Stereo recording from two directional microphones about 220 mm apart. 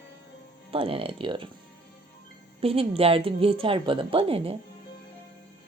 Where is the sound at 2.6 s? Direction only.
25° right (ahead or behind).